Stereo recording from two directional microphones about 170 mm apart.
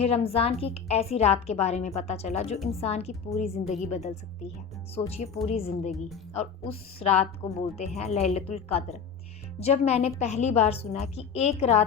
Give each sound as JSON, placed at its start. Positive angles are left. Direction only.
{"t": 0.0, "sound": "a woman's voice", "side_deg": 35}